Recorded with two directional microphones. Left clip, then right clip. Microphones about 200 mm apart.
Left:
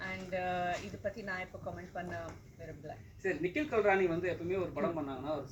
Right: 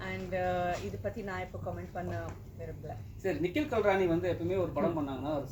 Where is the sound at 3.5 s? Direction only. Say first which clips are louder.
Right 1 dB; 45° right (ahead or behind).